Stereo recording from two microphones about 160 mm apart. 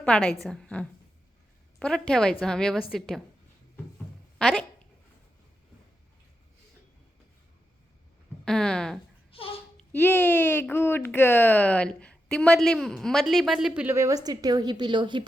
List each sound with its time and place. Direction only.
0.0 s a woman's voice: 5° left (ahead or behind)
4.4 s speech: 5° left (ahead or behind)
8.4 s a woman's voice: 5° left (ahead or behind)
9.3 s a sound: 35° left (ahead or behind)
9.9 s speech: 10° left (ahead or behind)
13.8 s a woman's voice: 20° right (ahead or behind)